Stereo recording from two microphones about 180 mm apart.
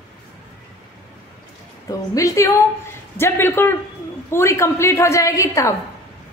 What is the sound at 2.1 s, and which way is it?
A woman's voice, 20° left (ahead or behind).